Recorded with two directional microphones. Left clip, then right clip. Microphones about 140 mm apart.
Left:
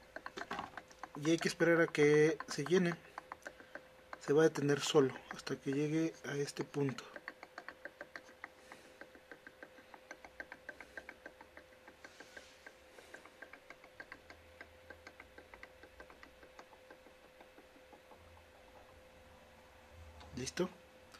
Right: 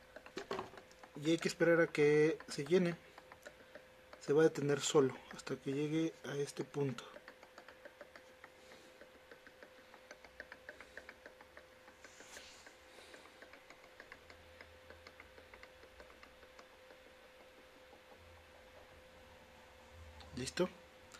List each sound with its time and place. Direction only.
1.2 s speech: 15° left (ahead or behind)
4.2 s speech: 15° left (ahead or behind)
20.3 s a sound: 10° left (ahead or behind)